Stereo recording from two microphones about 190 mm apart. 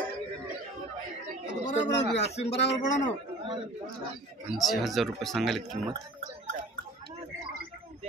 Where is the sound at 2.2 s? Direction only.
35° left (ahead or behind).